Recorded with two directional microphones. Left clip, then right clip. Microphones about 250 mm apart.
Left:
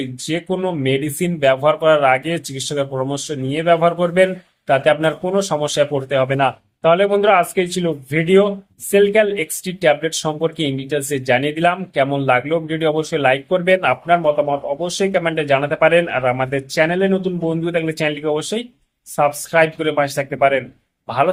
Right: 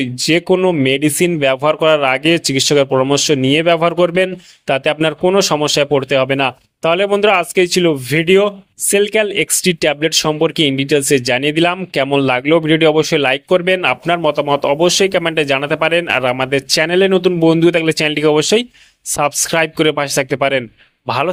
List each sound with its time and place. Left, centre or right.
0.0 s speech: right